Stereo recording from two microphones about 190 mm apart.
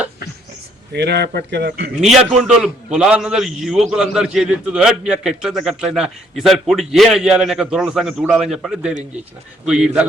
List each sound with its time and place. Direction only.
0.9 s speech: 60° right (ahead or behind)
2.6 s a man's voice: 5° right (ahead or behind)